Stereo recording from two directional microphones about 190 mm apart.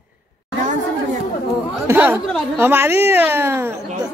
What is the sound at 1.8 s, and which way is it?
Speech, 10° right (ahead or behind).